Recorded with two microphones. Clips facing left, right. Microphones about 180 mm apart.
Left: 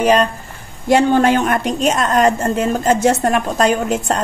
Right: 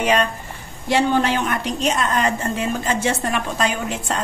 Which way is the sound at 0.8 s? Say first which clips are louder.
Left 6 dB; 50° left (ahead or behind).